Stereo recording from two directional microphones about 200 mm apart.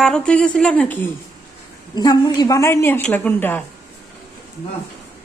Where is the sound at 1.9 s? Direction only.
20° left (ahead or behind).